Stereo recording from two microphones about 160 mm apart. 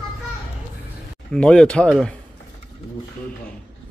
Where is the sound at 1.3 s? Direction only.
5° left (ahead or behind).